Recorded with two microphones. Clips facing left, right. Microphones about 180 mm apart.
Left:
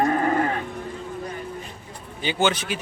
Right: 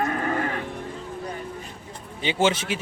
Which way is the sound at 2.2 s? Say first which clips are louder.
Right 1 dB; 25° right (ahead or behind).